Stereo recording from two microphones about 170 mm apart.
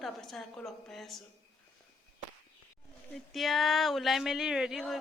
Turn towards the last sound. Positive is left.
turn(degrees=0)  # may be behind; listen again after turning